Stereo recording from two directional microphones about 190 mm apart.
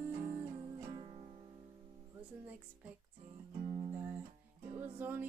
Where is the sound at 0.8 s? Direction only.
25° right (ahead or behind).